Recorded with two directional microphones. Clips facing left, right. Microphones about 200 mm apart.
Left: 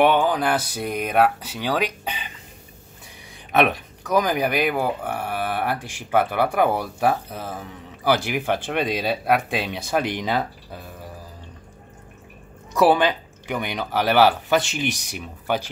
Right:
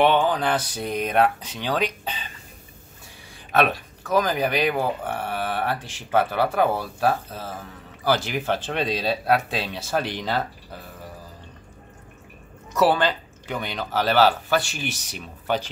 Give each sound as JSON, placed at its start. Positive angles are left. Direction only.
{"t": 0.0, "sound": "speech", "side_deg": 10}
{"t": 3.5, "sound": "speech", "side_deg": 15}
{"t": 12.7, "sound": "speech", "side_deg": 15}